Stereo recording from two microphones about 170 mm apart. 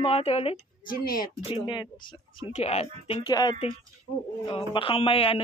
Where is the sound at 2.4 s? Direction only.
40° left (ahead or behind).